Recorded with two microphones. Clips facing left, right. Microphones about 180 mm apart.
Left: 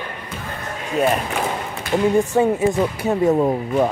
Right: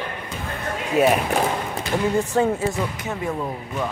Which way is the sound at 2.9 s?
40° left (ahead or behind).